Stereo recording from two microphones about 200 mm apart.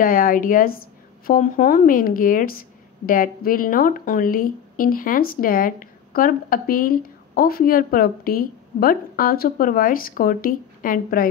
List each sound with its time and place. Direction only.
0.0 s speech: 45° left (ahead or behind)